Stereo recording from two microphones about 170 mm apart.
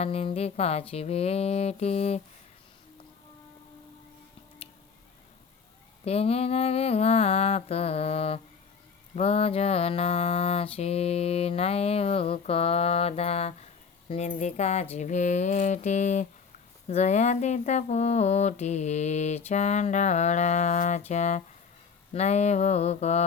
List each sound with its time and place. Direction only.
0.0 s mantra: 35° left (ahead or behind)
6.1 s mantra: 35° left (ahead or behind)
14.1 s a sound: 35° left (ahead or behind)
16.9 s mantra: 40° left (ahead or behind)
19.5 s a sound: 40° left (ahead or behind)
22.1 s mantra: 40° left (ahead or behind)